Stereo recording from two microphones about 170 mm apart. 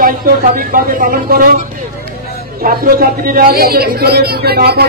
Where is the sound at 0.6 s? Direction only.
55° right (ahead or behind).